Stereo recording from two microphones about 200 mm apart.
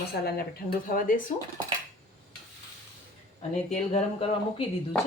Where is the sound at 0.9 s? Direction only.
45° left (ahead or behind).